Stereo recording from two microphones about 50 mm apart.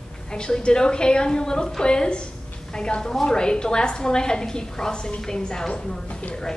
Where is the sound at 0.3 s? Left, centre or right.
Centre.